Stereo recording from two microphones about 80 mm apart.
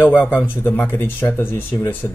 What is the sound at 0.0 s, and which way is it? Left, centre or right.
Speech, left.